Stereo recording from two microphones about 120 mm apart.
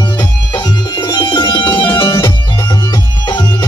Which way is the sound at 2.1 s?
30° left (ahead or behind).